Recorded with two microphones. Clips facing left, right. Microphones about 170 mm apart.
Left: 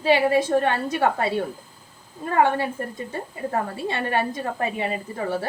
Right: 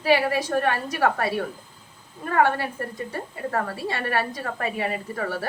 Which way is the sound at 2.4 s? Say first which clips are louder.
Left 2 dB; 20° left (ahead or behind).